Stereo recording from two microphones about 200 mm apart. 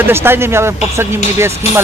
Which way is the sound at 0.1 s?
10° right (ahead or behind).